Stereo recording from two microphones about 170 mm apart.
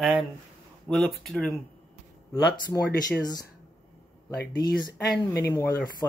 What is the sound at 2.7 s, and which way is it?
Speech, 15° left (ahead or behind).